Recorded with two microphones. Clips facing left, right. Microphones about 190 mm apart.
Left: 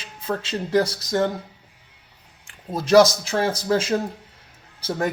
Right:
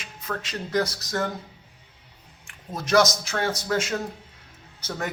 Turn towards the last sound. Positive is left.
turn(degrees=35)  # may be behind; listen again after turning